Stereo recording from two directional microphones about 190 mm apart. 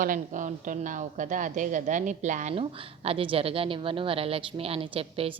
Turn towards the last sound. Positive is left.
turn(degrees=-30)  # may be behind; listen again after turning